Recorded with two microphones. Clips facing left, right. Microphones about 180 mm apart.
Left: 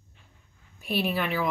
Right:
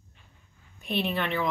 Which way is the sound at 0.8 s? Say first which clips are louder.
Left 1 dB; 5° left (ahead or behind).